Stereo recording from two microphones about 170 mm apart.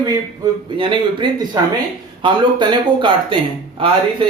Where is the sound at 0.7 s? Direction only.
30° right (ahead or behind).